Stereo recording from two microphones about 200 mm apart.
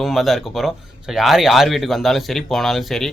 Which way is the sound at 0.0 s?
Centre (ahead or behind).